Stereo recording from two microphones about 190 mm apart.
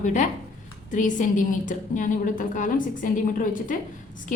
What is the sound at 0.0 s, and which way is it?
A woman's voice, 40° left (ahead or behind).